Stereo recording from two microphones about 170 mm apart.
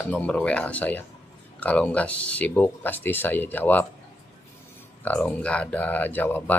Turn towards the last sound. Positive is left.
turn(degrees=10)  # may be behind; listen again after turning